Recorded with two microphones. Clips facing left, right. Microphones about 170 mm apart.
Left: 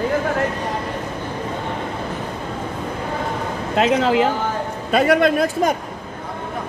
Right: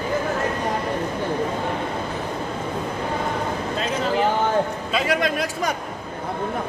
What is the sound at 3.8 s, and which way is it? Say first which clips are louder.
Speech: left 8 dB; 85° left.